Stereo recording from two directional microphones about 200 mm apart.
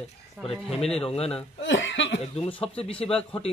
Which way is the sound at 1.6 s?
65° left (ahead or behind).